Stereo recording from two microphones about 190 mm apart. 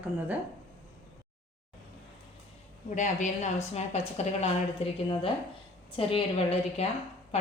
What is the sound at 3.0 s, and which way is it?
A woman's voice, 40° left (ahead or behind).